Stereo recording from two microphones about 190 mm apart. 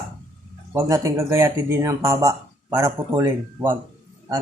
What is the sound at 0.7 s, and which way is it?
A man's voice, 15° right (ahead or behind).